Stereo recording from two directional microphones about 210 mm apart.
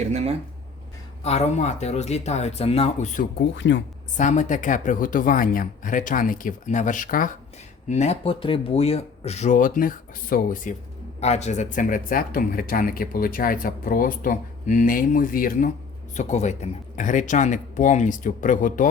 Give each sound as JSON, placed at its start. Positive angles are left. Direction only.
{"t": 0.1, "sound": "speech", "side_deg": -30}
{"t": 1.2, "sound": "speech", "side_deg": 30}
{"t": 3.3, "sound": "speech", "side_deg": 60}
{"t": 4.2, "sound": "speech", "side_deg": 35}